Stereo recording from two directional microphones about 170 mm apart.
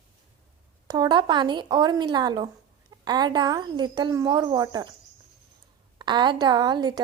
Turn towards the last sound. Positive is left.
turn(degrees=-25)  # may be behind; listen again after turning